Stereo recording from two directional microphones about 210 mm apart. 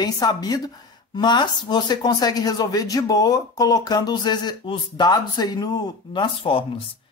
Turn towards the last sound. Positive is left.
turn(degrees=25)  # may be behind; listen again after turning